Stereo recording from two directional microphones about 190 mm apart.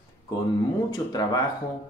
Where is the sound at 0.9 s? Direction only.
20° left (ahead or behind).